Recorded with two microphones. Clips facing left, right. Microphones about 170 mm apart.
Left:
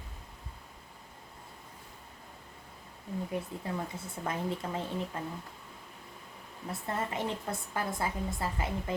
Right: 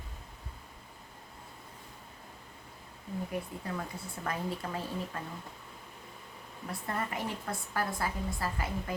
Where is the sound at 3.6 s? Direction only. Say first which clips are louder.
Left 2 dB; 25° left (ahead or behind).